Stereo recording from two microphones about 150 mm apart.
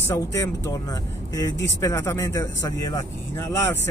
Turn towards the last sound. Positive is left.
turn(degrees=20)  # may be behind; listen again after turning